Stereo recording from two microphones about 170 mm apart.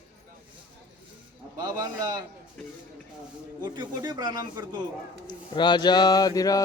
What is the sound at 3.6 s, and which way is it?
Speech, 25° right (ahead or behind).